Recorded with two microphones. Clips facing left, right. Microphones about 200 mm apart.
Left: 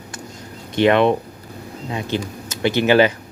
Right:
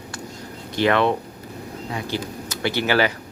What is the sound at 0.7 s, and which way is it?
Speech, 20° left (ahead or behind).